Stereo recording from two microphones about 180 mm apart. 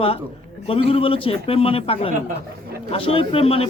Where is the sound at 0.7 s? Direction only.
30° left (ahead or behind).